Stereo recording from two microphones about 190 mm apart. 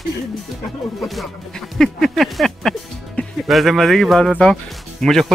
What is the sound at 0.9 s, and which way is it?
Speech, centre (ahead or behind).